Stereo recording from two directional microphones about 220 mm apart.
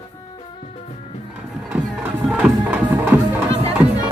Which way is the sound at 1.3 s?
5° right (ahead or behind).